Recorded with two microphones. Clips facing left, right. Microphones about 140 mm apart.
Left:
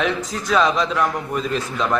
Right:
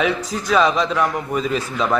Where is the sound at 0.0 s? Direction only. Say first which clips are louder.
Right 2 dB; centre (ahead or behind).